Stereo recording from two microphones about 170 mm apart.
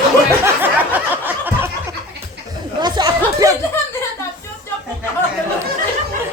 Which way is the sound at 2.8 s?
25° right (ahead or behind).